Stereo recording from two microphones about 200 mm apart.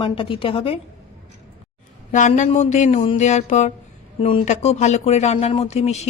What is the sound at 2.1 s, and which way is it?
Speech, 40° left (ahead or behind).